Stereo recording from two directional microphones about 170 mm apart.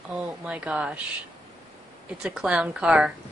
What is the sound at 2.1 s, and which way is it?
A woman's voice, 5° right (ahead or behind).